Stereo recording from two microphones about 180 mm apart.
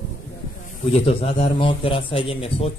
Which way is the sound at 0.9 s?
30° left (ahead or behind).